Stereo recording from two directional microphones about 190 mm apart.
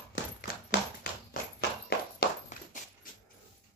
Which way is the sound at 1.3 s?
55° left (ahead or behind).